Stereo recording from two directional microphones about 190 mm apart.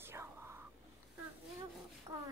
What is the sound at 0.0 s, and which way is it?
Whispering, 15° right (ahead or behind).